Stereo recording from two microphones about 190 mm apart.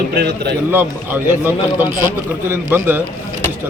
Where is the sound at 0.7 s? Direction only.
10° right (ahead or behind).